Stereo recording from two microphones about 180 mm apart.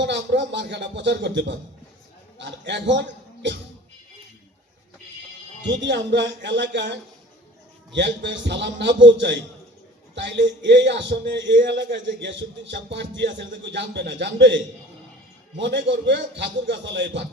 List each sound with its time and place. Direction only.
0.0 s a man's voice: 80° right
5.6 s speech: 85° right